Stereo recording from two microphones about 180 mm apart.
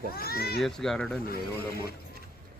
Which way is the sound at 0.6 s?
Centre (ahead or behind).